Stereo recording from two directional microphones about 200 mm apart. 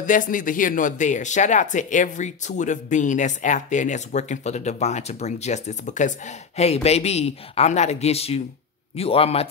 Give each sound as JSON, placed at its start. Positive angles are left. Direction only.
{"t": 0.0, "sound": "a man's voice", "side_deg": 40}